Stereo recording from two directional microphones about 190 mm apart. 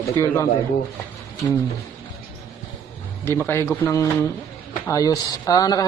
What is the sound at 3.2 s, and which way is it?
Speech, 15° left (ahead or behind).